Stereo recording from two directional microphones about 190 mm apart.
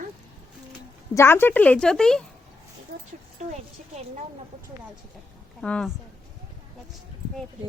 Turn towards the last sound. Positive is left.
turn(degrees=5)  # may be behind; listen again after turning